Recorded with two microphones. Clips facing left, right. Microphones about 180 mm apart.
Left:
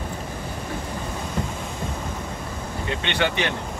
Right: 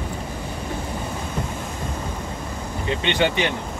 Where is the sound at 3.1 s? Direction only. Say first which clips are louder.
Right 3 dB; 15° right (ahead or behind).